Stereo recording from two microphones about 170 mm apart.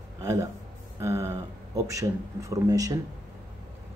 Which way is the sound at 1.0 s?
15° right (ahead or behind).